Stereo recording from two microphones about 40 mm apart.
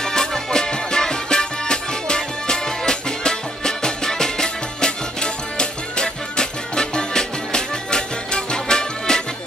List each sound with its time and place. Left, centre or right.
0.0 s music: centre